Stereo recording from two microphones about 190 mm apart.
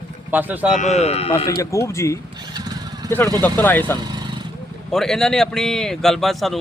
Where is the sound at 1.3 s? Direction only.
15° left (ahead or behind).